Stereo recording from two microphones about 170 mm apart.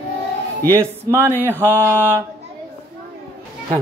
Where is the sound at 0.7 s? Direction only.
15° right (ahead or behind).